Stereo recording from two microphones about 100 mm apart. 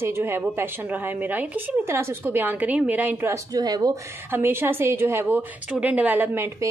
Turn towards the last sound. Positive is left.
turn(degrees=-20)  # may be behind; listen again after turning